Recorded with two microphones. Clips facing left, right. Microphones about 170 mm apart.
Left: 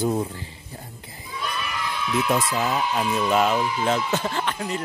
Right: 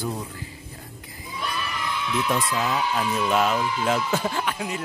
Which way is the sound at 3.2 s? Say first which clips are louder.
Left 2 dB; centre (ahead or behind).